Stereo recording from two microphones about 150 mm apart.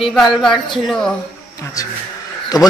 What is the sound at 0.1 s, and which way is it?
A woman's voice, centre (ahead or behind).